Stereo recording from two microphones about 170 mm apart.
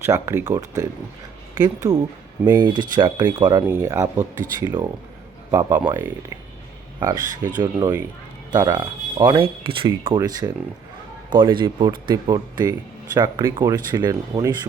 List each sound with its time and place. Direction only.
0.0 s speech: 15° right (ahead or behind)
7.6 s speech: 15° right (ahead or behind)